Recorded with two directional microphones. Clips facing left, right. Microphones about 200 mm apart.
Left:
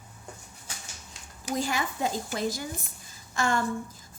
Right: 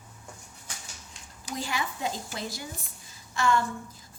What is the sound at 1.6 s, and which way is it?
A woman's voice, 45° left (ahead or behind).